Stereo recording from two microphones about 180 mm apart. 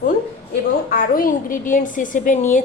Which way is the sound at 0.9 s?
50° left (ahead or behind).